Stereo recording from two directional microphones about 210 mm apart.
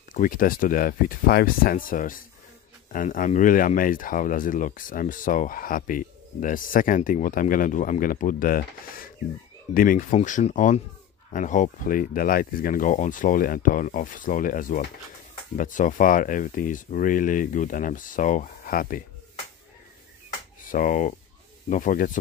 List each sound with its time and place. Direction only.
0.1 s speech: 40° left (ahead or behind)
20.6 s speech: 40° left (ahead or behind)